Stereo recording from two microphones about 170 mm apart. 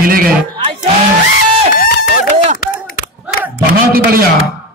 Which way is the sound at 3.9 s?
60° right (ahead or behind).